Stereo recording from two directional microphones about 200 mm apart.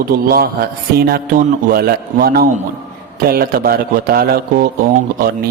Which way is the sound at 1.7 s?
50° right (ahead or behind).